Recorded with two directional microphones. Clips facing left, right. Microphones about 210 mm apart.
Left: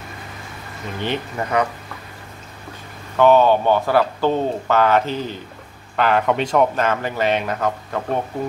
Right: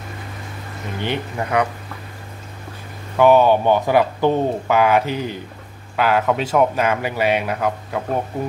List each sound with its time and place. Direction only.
1.0 s speech: 10° right (ahead or behind)
3.2 s speech: 10° right (ahead or behind)